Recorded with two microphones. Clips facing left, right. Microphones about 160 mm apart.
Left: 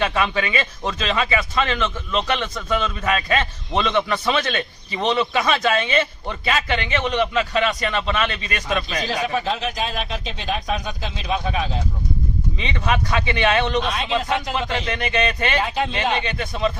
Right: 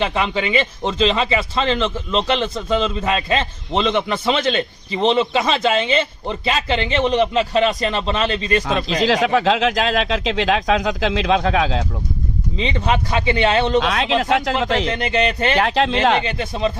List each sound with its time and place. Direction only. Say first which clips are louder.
0.0 s speech: right 1 dB; 25° right (ahead or behind)
9.0 s speech: right 9 dB; 90° right
12.5 s speech: right 4 dB; 30° right (ahead or behind)
13.7 s speech: right 5 dB; 90° right
14.8 s speech: right 3 dB; 30° right (ahead or behind)
15.5 s speech: right 5 dB; 85° right
16.2 s speech: right 2 dB; 30° right (ahead or behind)